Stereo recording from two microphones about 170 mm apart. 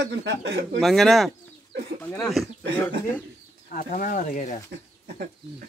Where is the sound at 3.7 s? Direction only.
55° left (ahead or behind).